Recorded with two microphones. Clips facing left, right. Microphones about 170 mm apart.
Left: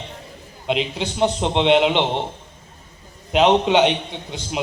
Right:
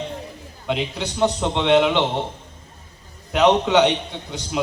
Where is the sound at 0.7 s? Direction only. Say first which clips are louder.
Left 2 dB; 20° left (ahead or behind).